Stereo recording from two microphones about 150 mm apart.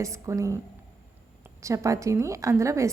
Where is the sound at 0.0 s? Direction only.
20° right (ahead or behind).